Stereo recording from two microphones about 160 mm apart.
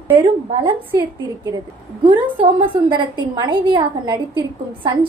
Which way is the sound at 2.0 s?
30° right (ahead or behind).